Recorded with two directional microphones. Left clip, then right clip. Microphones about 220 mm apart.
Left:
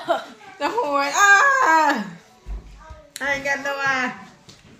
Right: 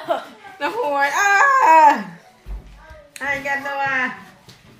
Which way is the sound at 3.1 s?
30° left (ahead or behind).